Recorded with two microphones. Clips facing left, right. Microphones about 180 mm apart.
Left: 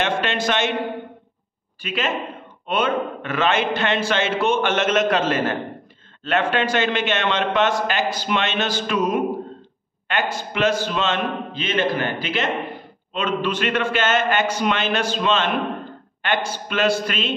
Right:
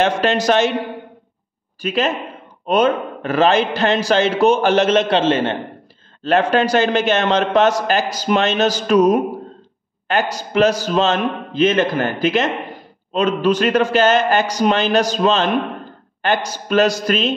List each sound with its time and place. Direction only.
0.0 s a man's voice: 40° right (ahead or behind)
1.8 s a man's voice: 40° right (ahead or behind)
6.2 s a man's voice: 40° right (ahead or behind)